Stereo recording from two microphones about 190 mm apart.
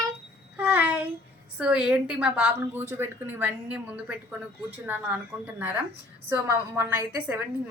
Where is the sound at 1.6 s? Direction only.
5° right (ahead or behind).